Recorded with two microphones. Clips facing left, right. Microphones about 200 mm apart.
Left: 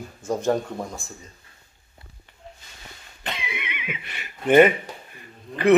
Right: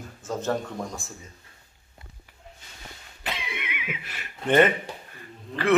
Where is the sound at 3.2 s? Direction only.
Centre (ahead or behind).